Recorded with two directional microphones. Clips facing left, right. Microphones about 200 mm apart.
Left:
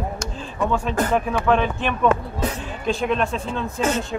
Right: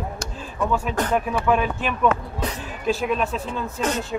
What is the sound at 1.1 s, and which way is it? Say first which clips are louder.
A man's voice: left 1 dB; 5° right (ahead or behind).